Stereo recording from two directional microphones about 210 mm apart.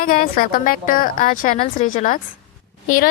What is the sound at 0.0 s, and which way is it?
Speech, 40° left (ahead or behind).